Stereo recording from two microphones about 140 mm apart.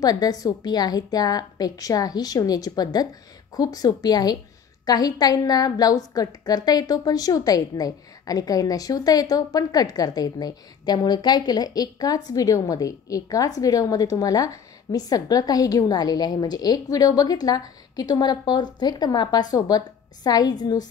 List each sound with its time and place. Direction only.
0.0 s a woman's voice: 25° left (ahead or behind)